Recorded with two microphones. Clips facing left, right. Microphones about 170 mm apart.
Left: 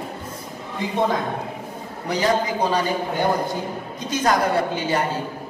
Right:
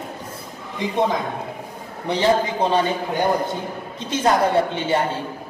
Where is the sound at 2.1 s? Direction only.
25° right (ahead or behind).